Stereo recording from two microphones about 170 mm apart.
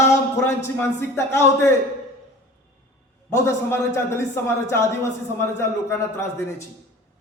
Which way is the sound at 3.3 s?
15° left (ahead or behind).